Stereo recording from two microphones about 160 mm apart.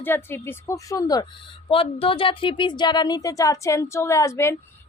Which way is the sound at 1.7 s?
35° left (ahead or behind).